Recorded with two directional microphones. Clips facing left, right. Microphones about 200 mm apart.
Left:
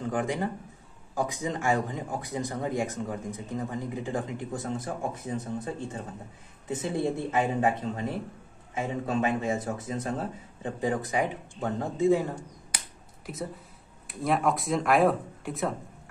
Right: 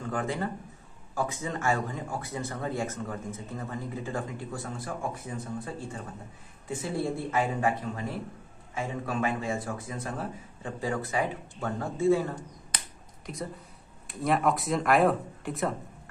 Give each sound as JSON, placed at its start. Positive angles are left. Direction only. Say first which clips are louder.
{"t": 0.0, "sound": "a man's voice", "louder": "left 2 dB", "side_deg": 15}